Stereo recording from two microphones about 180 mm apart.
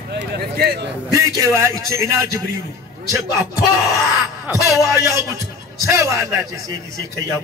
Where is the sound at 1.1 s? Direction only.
20° right (ahead or behind).